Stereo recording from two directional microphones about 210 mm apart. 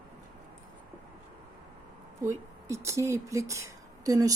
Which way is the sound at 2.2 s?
15° right (ahead or behind).